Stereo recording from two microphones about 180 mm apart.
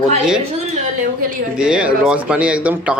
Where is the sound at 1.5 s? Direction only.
5° right (ahead or behind).